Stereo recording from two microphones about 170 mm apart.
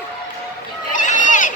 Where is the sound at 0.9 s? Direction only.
50° left (ahead or behind).